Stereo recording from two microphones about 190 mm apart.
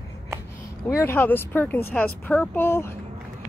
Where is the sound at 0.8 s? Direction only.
15° left (ahead or behind).